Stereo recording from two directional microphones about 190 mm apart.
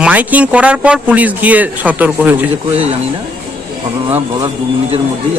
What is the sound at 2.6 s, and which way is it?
Speech, 30° right (ahead or behind).